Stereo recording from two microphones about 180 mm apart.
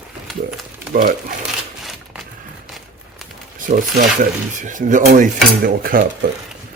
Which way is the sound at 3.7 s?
50° right (ahead or behind).